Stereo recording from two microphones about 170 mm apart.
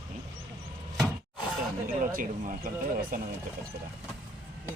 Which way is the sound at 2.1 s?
55° right (ahead or behind).